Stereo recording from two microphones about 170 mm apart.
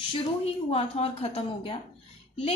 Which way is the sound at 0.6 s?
35° left (ahead or behind).